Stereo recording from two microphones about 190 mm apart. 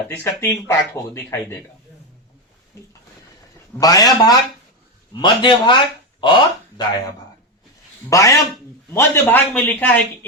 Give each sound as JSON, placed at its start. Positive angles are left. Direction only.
{"t": 0.3, "sound": "speech", "side_deg": 15}
{"t": 3.8, "sound": "speech", "side_deg": 20}